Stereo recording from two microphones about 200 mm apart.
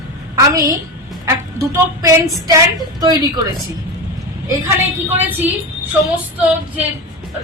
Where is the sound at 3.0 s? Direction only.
20° right (ahead or behind).